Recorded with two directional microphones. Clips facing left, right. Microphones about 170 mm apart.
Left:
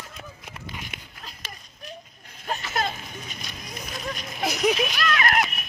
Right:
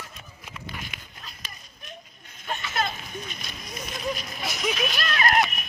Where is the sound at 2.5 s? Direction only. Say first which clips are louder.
Left 1 dB; 35° left (ahead or behind).